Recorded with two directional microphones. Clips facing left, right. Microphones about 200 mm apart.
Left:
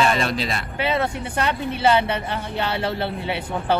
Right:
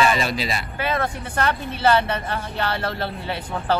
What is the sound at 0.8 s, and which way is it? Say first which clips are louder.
Speech: left 3 dB; 20° left (ahead or behind).